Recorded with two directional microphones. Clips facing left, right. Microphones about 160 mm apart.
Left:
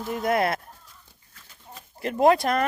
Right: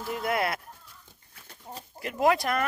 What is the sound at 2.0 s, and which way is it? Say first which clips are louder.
Speech: left 5 dB; 30° left (ahead or behind).